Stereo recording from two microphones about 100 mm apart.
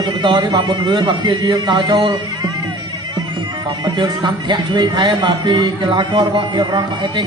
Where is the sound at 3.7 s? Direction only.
50° right (ahead or behind).